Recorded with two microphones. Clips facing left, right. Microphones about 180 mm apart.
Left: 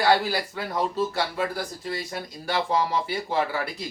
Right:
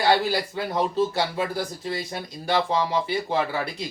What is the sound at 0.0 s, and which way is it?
Speech, 25° right (ahead or behind).